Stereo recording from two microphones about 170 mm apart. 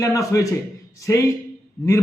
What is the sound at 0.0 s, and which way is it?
A man's voice, 20° left (ahead or behind).